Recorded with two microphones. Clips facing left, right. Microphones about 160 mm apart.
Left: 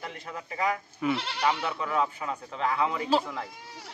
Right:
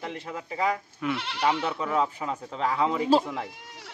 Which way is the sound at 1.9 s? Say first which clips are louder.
Right 1 dB; 25° right (ahead or behind).